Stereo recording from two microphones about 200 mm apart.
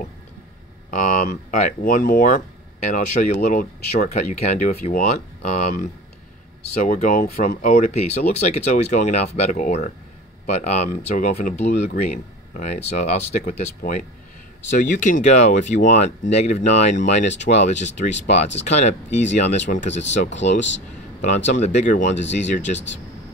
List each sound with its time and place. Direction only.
0.8 s speech: 40° left (ahead or behind)
21.5 s speech: 35° left (ahead or behind)